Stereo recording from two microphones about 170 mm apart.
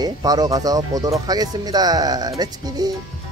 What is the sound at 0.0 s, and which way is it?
Speech, 20° right (ahead or behind).